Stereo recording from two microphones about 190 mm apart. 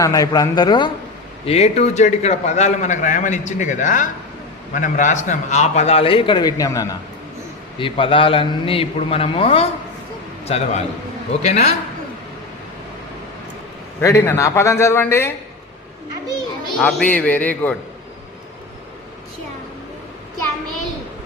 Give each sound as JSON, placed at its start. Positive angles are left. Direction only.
{"t": 0.0, "sound": "a man's voice", "side_deg": 20}
{"t": 1.5, "sound": "a man's voice", "side_deg": 35}
{"t": 14.0, "sound": "a man's voice", "side_deg": 15}
{"t": 16.7, "sound": "a man's voice", "side_deg": 5}